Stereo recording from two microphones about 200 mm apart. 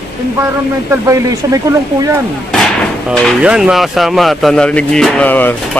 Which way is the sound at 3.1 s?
Centre (ahead or behind).